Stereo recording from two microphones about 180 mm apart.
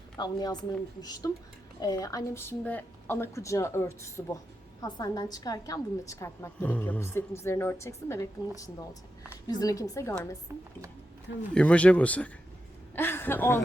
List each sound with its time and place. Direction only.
0.2 s a woman's voice: 25° left (ahead or behind)
11.5 s a woman's voice: 5° left (ahead or behind)